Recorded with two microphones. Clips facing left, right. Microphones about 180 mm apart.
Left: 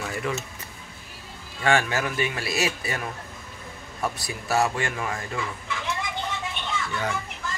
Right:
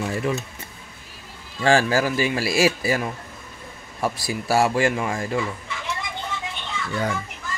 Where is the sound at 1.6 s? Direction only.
30° right (ahead or behind).